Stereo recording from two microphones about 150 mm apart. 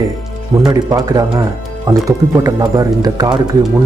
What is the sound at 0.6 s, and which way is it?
Speech, 25° right (ahead or behind).